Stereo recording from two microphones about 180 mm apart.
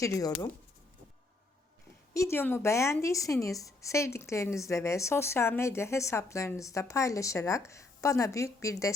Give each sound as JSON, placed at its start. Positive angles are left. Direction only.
{"t": 0.0, "sound": "speech", "side_deg": 20}
{"t": 2.1, "sound": "a woman's voice", "side_deg": 15}